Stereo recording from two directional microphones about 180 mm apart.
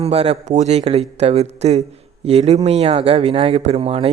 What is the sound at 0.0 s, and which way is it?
A man's voice, 35° right (ahead or behind).